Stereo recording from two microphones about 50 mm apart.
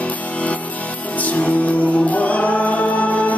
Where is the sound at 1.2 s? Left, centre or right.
Left.